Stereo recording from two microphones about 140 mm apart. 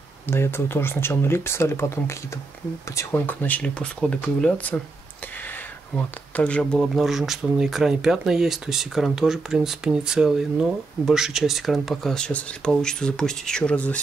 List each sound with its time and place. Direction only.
0.3 s speech: 15° left (ahead or behind)
6.3 s speech: 10° left (ahead or behind)